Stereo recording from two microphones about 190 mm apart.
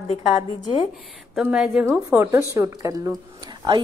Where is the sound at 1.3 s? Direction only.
5° right (ahead or behind).